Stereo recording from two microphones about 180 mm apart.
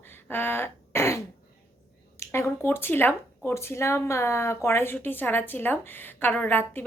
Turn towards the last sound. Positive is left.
turn(degrees=10)  # may be behind; listen again after turning